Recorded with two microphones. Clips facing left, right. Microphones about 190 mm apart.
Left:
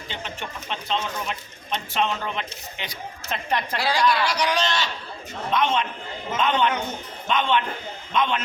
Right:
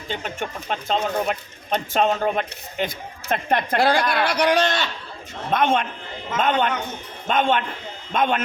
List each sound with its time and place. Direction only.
0.1 s a man's voice: 45° right (ahead or behind)